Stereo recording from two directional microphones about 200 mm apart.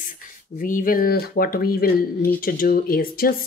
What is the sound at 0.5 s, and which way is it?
Speech, 40° left (ahead or behind).